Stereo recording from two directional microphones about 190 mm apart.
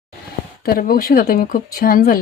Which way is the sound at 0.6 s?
50° left (ahead or behind).